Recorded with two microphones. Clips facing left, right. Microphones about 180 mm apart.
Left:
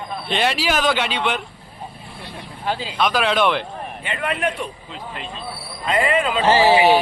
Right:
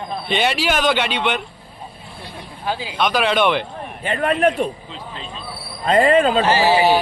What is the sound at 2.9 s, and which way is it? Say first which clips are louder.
Speech: right 1 dB; centre (ahead or behind).